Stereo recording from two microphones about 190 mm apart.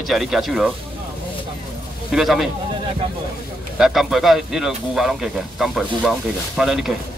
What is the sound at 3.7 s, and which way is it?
A man's voice, centre (ahead or behind).